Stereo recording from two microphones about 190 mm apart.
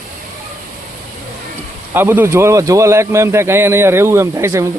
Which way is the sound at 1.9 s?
10° right (ahead or behind).